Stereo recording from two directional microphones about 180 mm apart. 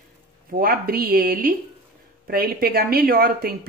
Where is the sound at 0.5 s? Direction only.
55° right (ahead or behind).